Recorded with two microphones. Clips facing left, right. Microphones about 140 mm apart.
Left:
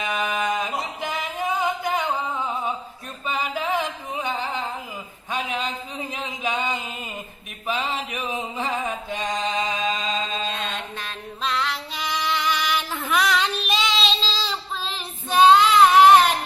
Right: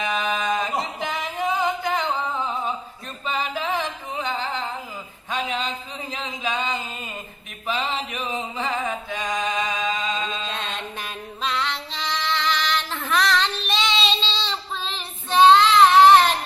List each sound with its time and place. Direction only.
0.0 s a sound: 5° left (ahead or behind)
1.1 s music: centre (ahead or behind)
3.2 s music: 10° left (ahead or behind)
5.3 s a sound: 5° left (ahead or behind)
8.5 s mantra: 10° left (ahead or behind)
9.4 s music: 25° left (ahead or behind)
11.4 s music: centre (ahead or behind)
11.9 s child singing: 10° left (ahead or behind)